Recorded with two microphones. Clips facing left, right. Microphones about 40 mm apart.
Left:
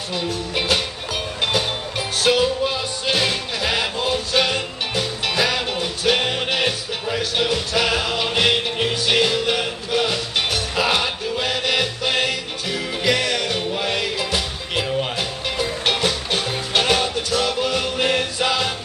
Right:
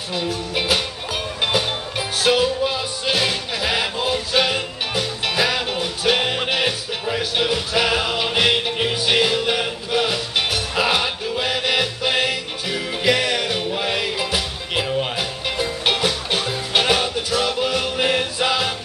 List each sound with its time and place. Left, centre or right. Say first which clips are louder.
0.1 s speech: right 1 dB; centre
1.4 s music: right 1 dB; centre